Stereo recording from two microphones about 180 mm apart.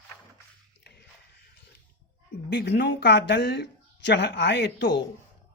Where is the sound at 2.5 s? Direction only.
70° left (ahead or behind).